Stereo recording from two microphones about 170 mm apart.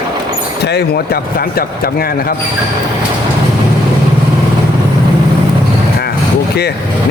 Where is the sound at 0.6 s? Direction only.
75° left (ahead or behind).